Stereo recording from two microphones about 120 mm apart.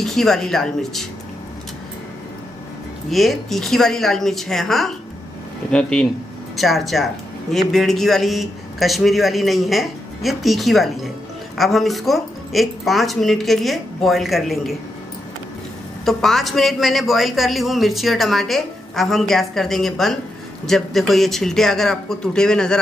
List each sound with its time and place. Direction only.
0.0 s a man's voice: 5° left (ahead or behind)
3.1 s a man's voice: centre (ahead or behind)
16.1 s a man's voice: centre (ahead or behind)